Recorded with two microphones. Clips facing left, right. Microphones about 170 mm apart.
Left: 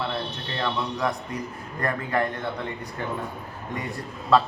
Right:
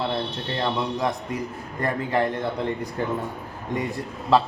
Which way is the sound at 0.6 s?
25° right (ahead or behind).